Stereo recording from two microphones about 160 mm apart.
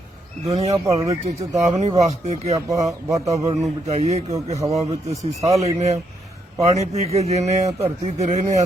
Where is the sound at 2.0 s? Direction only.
45° right (ahead or behind).